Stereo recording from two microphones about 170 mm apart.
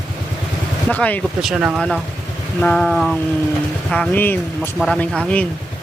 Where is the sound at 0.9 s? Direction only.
10° left (ahead or behind).